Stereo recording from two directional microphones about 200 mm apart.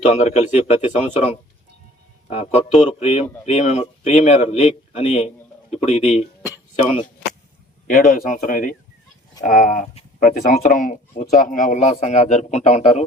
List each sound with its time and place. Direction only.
0.0 s speech: 35° left (ahead or behind)
7.9 s speech: 45° left (ahead or behind)